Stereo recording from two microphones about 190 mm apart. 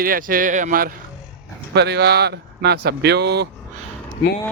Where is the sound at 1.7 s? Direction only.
60° right (ahead or behind).